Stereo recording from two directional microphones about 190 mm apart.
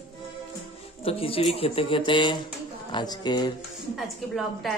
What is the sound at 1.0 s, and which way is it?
Speech, 30° left (ahead or behind).